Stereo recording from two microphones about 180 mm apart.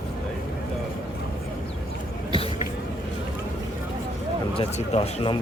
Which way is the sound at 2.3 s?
30° left (ahead or behind).